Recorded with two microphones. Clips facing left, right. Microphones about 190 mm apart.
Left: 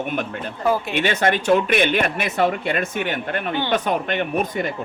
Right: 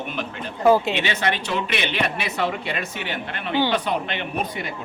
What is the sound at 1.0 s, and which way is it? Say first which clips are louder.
Speech: left 4 dB; 50° left (ahead or behind).